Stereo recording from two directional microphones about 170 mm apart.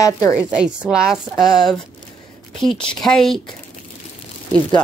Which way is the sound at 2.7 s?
30° left (ahead or behind).